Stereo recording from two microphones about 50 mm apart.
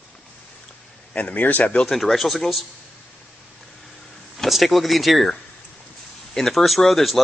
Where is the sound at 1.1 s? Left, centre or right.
Left.